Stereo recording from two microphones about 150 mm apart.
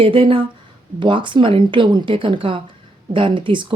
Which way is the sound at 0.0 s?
35° right (ahead or behind).